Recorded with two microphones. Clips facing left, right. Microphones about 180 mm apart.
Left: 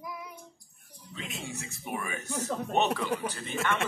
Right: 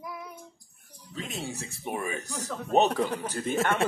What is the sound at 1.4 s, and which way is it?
Speech, 35° right (ahead or behind).